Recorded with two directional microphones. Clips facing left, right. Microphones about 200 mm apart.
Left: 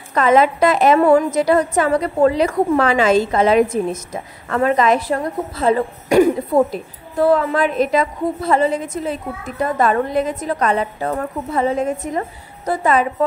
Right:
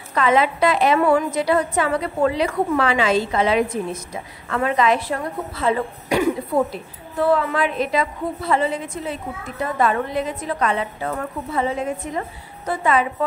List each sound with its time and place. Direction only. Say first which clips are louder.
0.1 s a woman's voice: left 4 dB; 45° left (ahead or behind)